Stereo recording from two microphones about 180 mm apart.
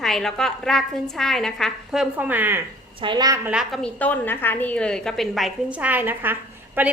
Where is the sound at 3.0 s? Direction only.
25° right (ahead or behind).